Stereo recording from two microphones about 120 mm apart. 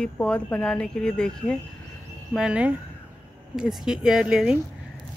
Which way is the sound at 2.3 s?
5° right (ahead or behind).